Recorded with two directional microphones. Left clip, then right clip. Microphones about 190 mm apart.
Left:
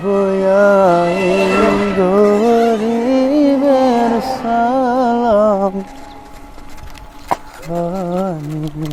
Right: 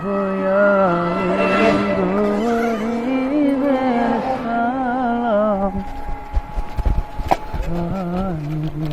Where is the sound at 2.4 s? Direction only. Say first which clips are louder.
Left 7 dB; 75° left (ahead or behind).